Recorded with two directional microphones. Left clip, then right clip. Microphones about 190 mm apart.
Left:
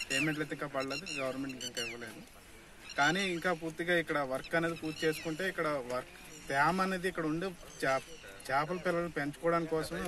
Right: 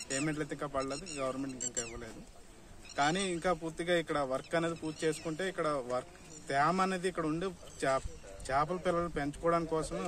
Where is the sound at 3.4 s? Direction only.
30° right (ahead or behind).